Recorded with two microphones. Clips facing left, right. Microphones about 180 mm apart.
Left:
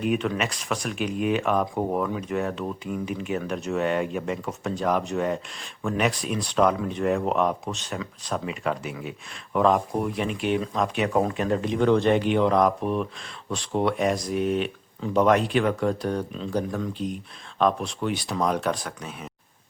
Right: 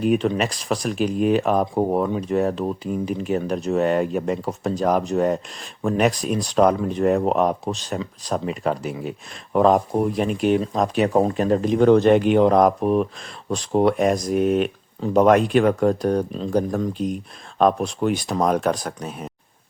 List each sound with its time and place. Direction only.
0.0 s speech: 35° right (ahead or behind)